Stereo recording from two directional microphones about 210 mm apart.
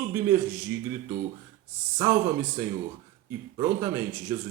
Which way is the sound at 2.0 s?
10° right (ahead or behind).